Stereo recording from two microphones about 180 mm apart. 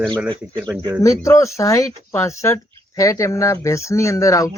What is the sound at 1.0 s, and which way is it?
Speech, 15° left (ahead or behind).